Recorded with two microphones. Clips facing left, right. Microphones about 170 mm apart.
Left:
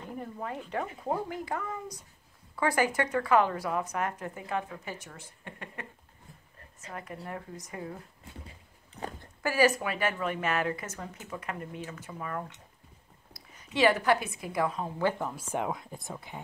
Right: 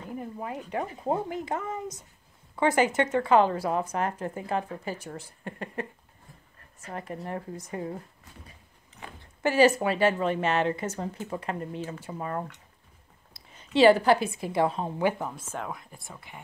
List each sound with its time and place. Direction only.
0.2 s speech: 15° right (ahead or behind); by 5.9 s 35° right (ahead or behind)
6.9 s speech: 35° right (ahead or behind)
8.5 s a sound: 35° left (ahead or behind)
9.4 s a woman's voice: 25° right (ahead or behind)
15.5 s speech: 20° left (ahead or behind)